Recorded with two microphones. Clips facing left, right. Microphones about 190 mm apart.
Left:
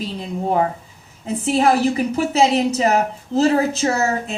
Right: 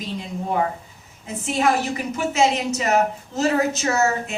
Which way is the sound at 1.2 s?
35° left (ahead or behind).